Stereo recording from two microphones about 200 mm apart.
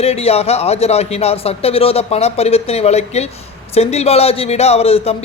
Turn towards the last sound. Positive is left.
turn(degrees=30)  # may be behind; listen again after turning